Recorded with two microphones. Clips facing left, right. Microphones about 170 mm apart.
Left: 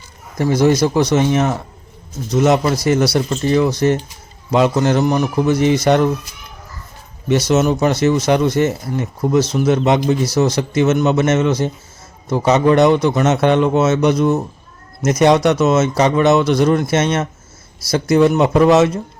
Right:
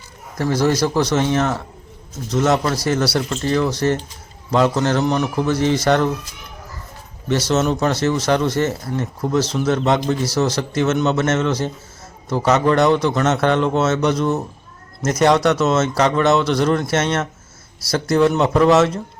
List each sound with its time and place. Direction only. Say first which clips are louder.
0.3 s speech: left 4 dB; 15° left (ahead or behind)
7.3 s speech: left 3 dB; 15° left (ahead or behind)